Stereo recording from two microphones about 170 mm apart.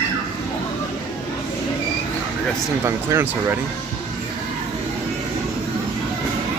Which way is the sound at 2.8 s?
15° right (ahead or behind).